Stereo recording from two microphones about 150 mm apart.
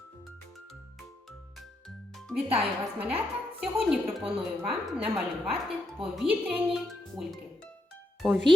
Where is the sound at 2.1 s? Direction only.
5° right (ahead or behind).